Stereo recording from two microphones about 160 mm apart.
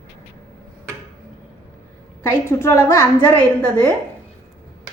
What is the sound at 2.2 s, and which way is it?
Speech, 15° left (ahead or behind).